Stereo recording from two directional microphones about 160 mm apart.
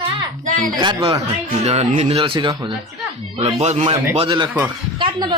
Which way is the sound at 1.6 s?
40° right (ahead or behind).